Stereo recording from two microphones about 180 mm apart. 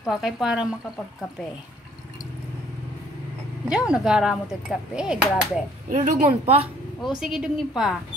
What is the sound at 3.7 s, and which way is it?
Speech, 5° right (ahead or behind).